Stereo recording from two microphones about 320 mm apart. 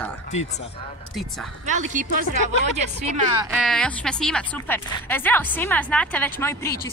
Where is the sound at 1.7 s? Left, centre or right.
Right.